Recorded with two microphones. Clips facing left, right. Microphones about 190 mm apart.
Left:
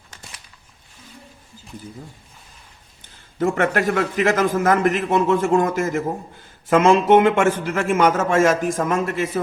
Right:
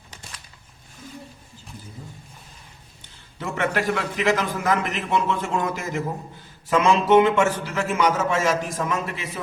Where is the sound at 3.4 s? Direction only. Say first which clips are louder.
Left 6 dB; 45° left (ahead or behind).